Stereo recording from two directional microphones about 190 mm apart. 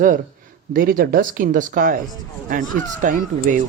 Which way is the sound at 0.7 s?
50° right (ahead or behind).